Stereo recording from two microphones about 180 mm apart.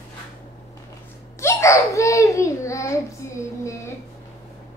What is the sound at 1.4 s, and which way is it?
A child's voice, 15° left (ahead or behind).